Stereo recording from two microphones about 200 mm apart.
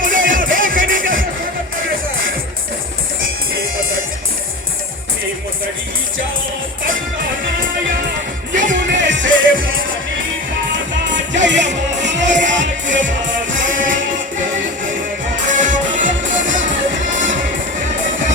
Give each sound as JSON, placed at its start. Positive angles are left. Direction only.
{"t": 0.0, "sound": "music", "side_deg": -40}
{"t": 8.5, "sound": "music", "side_deg": -40}
{"t": 8.9, "sound": "music", "side_deg": -65}
{"t": 11.4, "sound": "music", "side_deg": -60}
{"t": 13.7, "sound": "music", "side_deg": -40}
{"t": 15.4, "sound": "music", "side_deg": -40}